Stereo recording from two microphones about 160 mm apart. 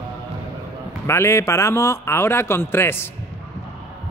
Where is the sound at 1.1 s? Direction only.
15° left (ahead or behind).